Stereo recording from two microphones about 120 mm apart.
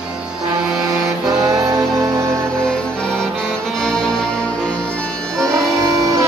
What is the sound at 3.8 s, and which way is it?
Music, 5° left (ahead or behind).